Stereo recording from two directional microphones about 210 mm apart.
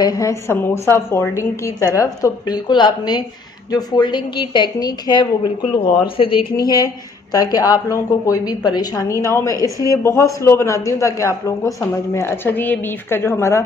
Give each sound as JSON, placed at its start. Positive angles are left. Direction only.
{"t": 0.0, "sound": "a woman's voice", "side_deg": 15}